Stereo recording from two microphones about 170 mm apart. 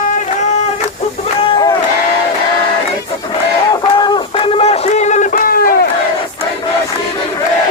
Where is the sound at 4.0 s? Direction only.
30° left (ahead or behind); by 5.9 s 60° left (ahead or behind).